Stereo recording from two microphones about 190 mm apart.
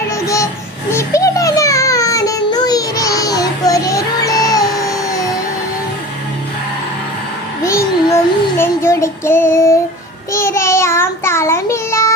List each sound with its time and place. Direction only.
0.9 s child singing: 15° left (ahead or behind)
7.6 s child singing: 15° left (ahead or behind)